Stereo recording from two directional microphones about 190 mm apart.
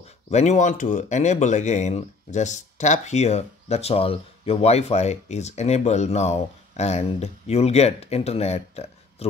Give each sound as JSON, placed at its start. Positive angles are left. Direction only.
{"t": 0.3, "sound": "speech", "side_deg": 35}